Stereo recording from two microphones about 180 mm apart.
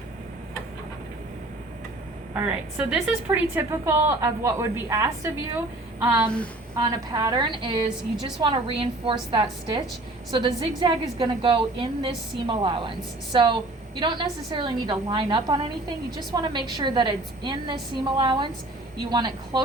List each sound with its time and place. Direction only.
2.3 s a woman's voice: 5° right (ahead or behind); by 19.6 s 25° right (ahead or behind)